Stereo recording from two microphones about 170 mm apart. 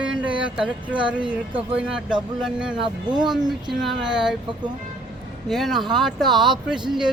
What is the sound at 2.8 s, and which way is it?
Speech, 25° right (ahead or behind).